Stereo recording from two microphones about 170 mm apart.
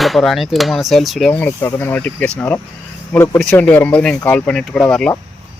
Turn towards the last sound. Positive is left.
turn(degrees=5)  # may be behind; listen again after turning